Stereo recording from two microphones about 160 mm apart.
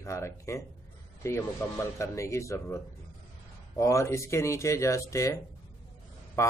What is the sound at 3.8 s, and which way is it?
Speech, 20° left (ahead or behind).